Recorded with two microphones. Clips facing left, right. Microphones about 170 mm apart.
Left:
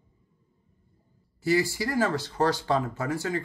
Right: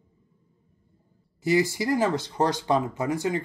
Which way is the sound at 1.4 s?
20° right (ahead or behind).